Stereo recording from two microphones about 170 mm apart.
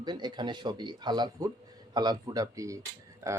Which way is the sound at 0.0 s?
25° right (ahead or behind).